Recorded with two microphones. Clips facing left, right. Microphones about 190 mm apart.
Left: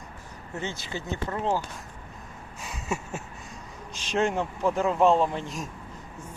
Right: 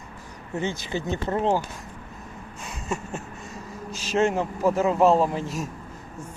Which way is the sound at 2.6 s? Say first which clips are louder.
Right 1 dB; centre (ahead or behind).